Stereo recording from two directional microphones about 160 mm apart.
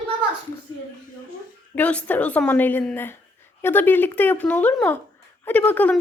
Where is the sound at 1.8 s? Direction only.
10° left (ahead or behind).